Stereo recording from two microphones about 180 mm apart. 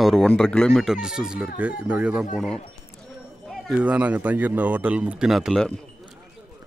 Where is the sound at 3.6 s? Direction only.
5° right (ahead or behind).